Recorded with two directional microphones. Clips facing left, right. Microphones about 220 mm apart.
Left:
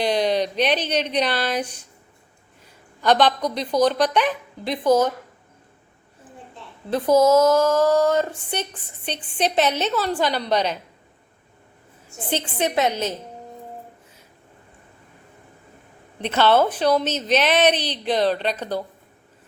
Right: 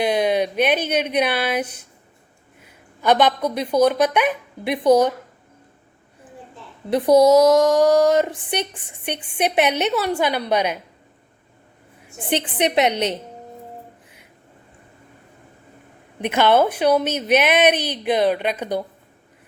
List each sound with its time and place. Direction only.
0.0 s a woman's voice: 10° right (ahead or behind)
3.0 s a woman's voice: 10° right (ahead or behind)
6.9 s a woman's voice: 15° right (ahead or behind)
12.0 s a woman's voice: 15° right (ahead or behind)
16.1 s a woman's voice: 10° right (ahead or behind)